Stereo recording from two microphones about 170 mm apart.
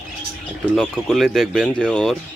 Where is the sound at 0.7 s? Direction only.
Centre (ahead or behind).